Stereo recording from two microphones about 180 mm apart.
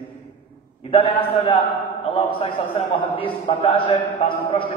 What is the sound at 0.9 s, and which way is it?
A man's voice, 30° left (ahead or behind).